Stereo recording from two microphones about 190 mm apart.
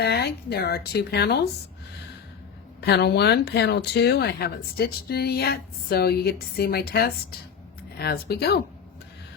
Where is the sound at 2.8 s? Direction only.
60° left (ahead or behind).